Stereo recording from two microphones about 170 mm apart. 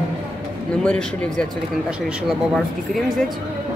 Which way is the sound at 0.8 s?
5° left (ahead or behind).